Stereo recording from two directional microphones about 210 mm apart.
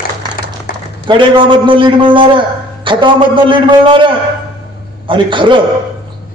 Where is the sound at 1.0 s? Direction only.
25° right (ahead or behind).